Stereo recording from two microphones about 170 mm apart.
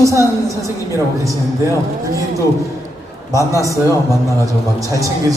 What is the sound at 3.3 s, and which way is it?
Speech, 20° left (ahead or behind).